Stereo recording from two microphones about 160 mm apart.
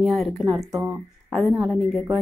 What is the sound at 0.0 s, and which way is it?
Speech, centre (ahead or behind).